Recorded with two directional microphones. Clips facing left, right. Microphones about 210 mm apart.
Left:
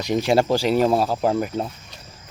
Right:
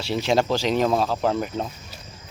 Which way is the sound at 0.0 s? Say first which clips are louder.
Left 3 dB; 15° left (ahead or behind).